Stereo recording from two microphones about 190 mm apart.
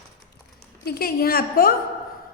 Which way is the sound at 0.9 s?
55° left (ahead or behind).